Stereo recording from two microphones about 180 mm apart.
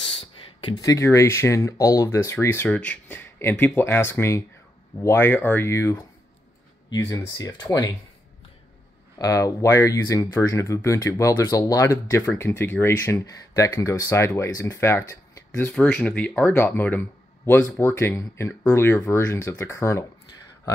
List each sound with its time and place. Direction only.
0.0 s speech: 30° left (ahead or behind)
9.2 s speech: 20° left (ahead or behind)